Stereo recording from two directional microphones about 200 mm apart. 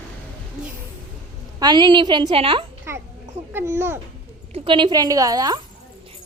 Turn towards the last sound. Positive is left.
turn(degrees=-20)  # may be behind; listen again after turning